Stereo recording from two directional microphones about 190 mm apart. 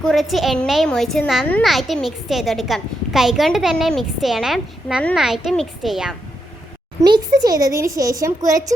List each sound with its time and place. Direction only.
0.0 s a woman's voice: centre (ahead or behind)
7.0 s speech: 20° right (ahead or behind)